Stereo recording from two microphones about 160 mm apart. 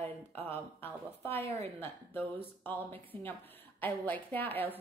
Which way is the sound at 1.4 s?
40° right (ahead or behind).